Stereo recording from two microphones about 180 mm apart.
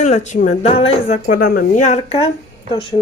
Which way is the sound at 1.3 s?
55° left (ahead or behind).